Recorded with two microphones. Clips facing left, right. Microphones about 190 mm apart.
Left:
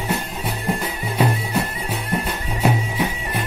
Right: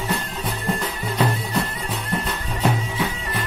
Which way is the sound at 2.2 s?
10° left (ahead or behind).